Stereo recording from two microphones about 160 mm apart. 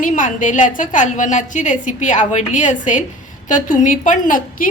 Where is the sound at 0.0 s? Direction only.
55° left (ahead or behind).